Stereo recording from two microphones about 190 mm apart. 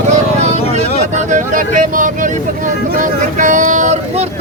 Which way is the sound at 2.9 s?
40° right (ahead or behind).